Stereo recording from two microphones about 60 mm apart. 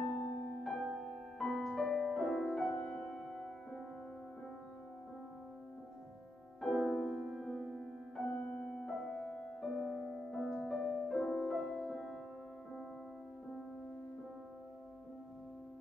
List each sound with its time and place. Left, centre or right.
0.0 s music: centre
6.6 s music: centre
8.3 s music: centre